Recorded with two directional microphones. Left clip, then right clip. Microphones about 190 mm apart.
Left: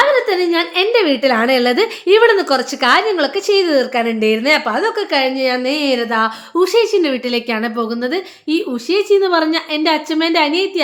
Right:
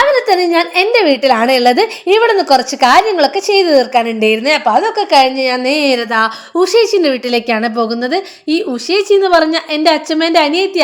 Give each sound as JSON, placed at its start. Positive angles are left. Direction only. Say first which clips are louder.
{"t": 0.0, "sound": "a woman's voice", "louder": "right 3 dB", "side_deg": -25}
{"t": 5.1, "sound": "a woman's voice", "louder": "right 8 dB", "side_deg": -30}